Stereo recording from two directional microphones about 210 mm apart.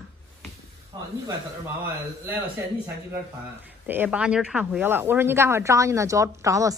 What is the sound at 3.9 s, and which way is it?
Speech, 10° right (ahead or behind).